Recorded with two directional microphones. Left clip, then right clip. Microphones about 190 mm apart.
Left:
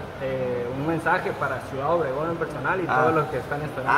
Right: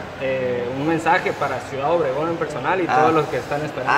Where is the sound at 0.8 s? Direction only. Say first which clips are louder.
Right 5 dB; 30° right (ahead or behind).